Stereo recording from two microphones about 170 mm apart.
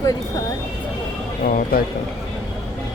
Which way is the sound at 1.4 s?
55° left (ahead or behind).